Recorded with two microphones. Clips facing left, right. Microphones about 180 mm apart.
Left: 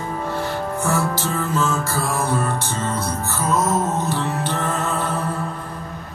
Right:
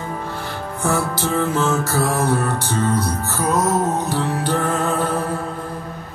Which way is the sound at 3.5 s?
35° right (ahead or behind).